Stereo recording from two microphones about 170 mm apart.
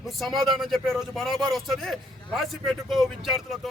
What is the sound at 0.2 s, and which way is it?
Speech, centre (ahead or behind).